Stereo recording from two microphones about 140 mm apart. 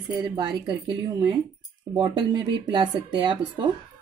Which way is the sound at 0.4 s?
30° right (ahead or behind).